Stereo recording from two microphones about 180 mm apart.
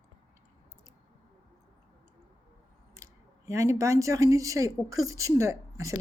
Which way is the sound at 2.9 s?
15° right (ahead or behind).